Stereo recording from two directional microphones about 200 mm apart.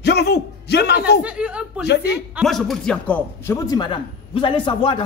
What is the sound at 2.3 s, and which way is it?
A man's voice, centre (ahead or behind).